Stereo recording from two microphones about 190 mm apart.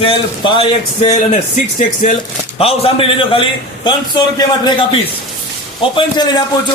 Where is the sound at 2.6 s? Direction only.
30° left (ahead or behind).